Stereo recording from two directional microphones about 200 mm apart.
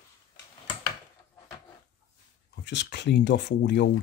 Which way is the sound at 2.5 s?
60° left (ahead or behind).